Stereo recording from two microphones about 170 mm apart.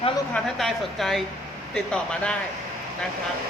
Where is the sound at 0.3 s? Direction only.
Centre (ahead or behind).